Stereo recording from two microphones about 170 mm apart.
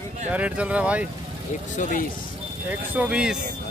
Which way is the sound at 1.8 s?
50° left (ahead or behind).